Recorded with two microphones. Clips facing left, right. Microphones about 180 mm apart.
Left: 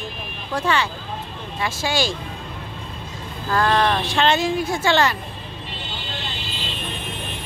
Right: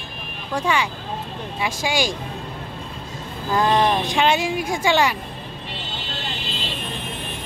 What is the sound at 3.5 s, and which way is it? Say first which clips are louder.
Speech: right 1 dB; 15° right (ahead or behind).